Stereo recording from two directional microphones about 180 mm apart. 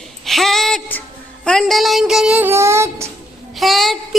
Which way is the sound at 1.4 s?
Centre (ahead or behind).